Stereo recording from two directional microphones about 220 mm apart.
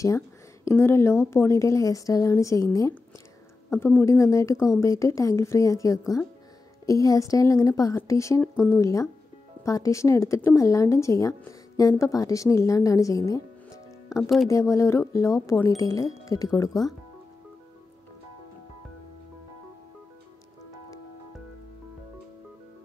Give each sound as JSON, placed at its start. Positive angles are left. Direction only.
{"t": 0.7, "sound": "speech", "side_deg": 10}
{"t": 14.0, "sound": "music", "side_deg": 15}
{"t": 14.5, "sound": "speech", "side_deg": 15}